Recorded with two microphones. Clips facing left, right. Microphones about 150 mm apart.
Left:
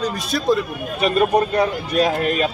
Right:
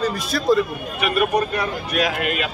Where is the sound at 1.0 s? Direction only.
30° left (ahead or behind).